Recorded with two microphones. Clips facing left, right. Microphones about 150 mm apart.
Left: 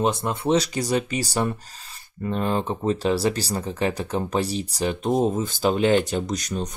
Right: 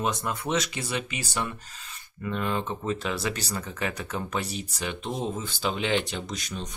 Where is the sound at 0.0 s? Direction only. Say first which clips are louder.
Left 6 dB; 30° left (ahead or behind).